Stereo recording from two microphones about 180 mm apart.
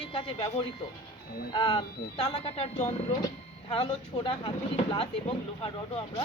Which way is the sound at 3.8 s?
30° left (ahead or behind).